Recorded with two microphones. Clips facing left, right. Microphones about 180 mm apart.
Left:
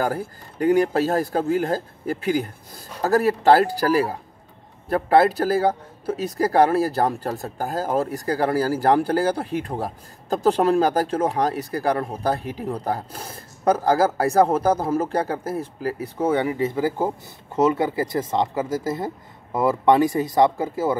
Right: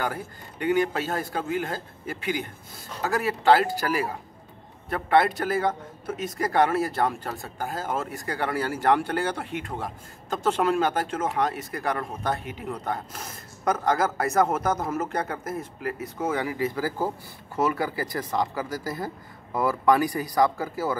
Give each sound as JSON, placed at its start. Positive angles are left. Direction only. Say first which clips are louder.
{"t": 0.0, "sound": "a man's voice", "louder": "left 6 dB", "side_deg": 35}